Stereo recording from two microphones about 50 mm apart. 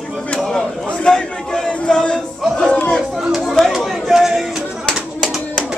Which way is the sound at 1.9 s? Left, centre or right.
Centre.